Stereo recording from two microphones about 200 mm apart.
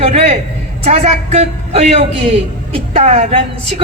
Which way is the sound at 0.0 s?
30° right (ahead or behind).